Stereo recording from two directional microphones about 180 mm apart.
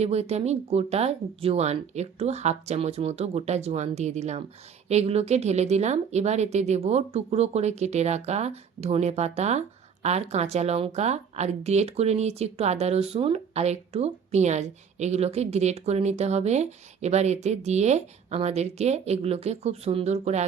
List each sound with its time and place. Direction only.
0.0 s speech: 35° right (ahead or behind)